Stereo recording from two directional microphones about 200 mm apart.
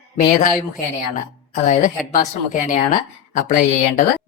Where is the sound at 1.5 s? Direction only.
40° left (ahead or behind).